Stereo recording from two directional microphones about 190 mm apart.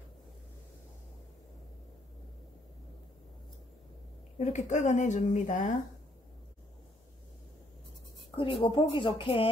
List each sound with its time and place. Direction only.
4.4 s speech: 40° left (ahead or behind)
8.4 s speech: 25° left (ahead or behind)